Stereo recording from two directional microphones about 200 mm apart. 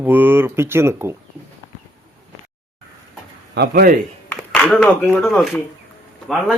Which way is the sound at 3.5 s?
55° right (ahead or behind).